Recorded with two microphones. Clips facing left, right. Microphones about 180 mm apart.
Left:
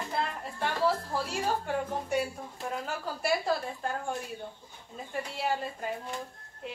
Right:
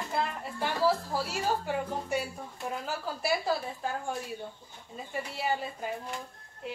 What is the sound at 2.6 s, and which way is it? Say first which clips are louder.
A woman's voice: even; centre (ahead or behind).